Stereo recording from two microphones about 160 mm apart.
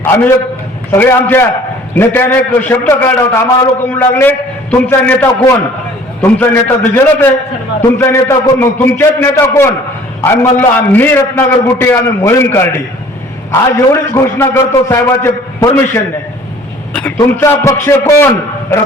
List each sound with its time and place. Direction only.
0.0 s a man's voice: 15° left (ahead or behind)